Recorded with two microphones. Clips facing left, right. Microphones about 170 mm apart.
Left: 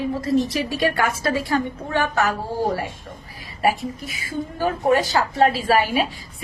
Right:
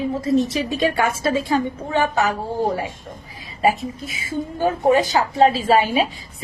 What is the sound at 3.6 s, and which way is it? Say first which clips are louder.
A woman's voice: right 2 dB; 20° right (ahead or behind).